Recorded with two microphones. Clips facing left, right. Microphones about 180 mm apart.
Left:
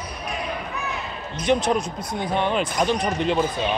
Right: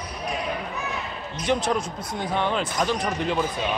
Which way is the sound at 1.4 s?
15° left (ahead or behind).